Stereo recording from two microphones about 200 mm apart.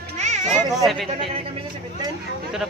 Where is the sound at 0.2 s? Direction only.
35° right (ahead or behind).